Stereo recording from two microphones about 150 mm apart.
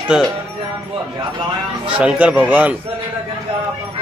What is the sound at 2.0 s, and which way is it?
Speech, 5° right (ahead or behind).